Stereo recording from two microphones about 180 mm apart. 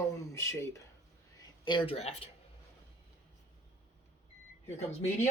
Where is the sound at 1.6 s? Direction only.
30° left (ahead or behind).